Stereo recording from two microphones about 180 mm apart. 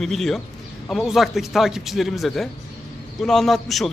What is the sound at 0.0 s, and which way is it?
Speech, centre (ahead or behind).